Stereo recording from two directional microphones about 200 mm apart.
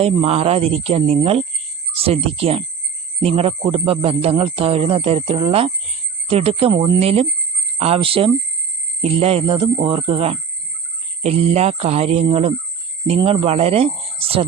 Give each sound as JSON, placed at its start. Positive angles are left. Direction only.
{"t": 0.0, "sound": "speech", "side_deg": -30}